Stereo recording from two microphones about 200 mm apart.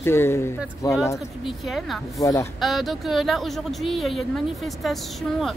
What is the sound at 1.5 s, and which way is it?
Speech, centre (ahead or behind).